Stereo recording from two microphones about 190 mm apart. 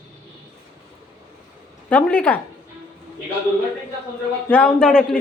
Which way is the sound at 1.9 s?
5° left (ahead or behind).